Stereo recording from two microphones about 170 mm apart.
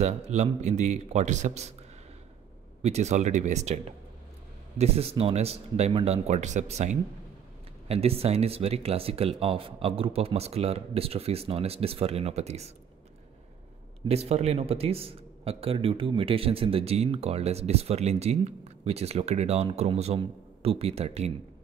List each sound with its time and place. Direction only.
0.0 s a man's voice: 40° right (ahead or behind)
2.8 s a man's voice: 40° right (ahead or behind)
7.9 s a man's voice: 35° right (ahead or behind)
14.0 s a man's voice: 40° right (ahead or behind)